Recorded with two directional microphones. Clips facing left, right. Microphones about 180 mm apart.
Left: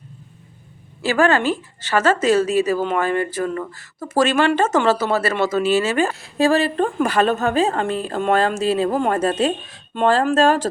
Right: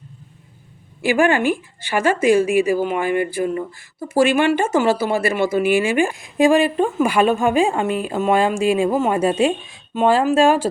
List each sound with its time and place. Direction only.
1.0 s speech: 15° right (ahead or behind)